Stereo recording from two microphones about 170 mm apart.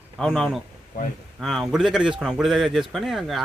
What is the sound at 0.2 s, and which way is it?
A man's voice, centre (ahead or behind).